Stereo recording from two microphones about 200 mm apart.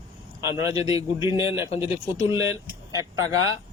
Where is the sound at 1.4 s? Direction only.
15° right (ahead or behind).